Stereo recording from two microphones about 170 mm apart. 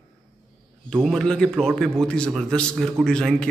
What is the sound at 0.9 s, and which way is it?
A man's voice, 5° left (ahead or behind).